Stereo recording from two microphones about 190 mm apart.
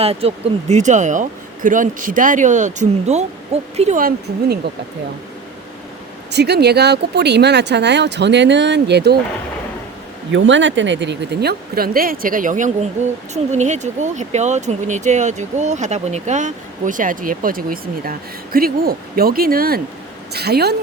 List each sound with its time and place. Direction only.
0.0 s speech: 30° right (ahead or behind)
3.9 s speech: 55° right (ahead or behind)
6.3 s speech: 60° right (ahead or behind)
10.3 s speech: 80° right; by 20.7 s 60° right (ahead or behind)